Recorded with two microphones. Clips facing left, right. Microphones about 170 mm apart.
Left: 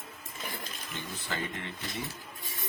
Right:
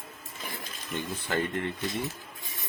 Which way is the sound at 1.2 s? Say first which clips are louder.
Right 7 dB; 55° right (ahead or behind).